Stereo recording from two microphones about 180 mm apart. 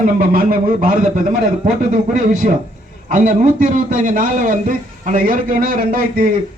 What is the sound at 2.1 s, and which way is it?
A man's voice, 45° right (ahead or behind).